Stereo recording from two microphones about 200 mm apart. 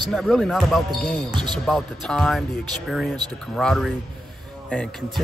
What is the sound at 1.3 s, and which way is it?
Speech, 20° right (ahead or behind).